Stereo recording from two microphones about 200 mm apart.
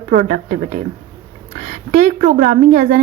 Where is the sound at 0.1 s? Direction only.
40° right (ahead or behind).